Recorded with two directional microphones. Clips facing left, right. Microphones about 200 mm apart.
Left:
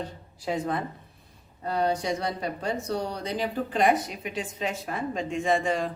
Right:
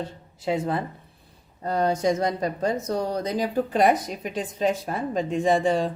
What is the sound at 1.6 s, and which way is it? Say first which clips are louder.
A woman's voice: right 4 dB; 45° right (ahead or behind).